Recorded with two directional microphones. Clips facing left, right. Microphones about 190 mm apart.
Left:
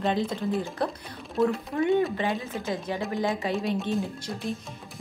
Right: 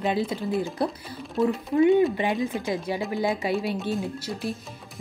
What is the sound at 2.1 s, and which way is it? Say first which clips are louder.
Speech: right 3 dB; 15° right (ahead or behind).